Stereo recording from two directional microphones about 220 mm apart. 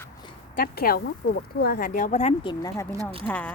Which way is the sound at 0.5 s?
45° left (ahead or behind).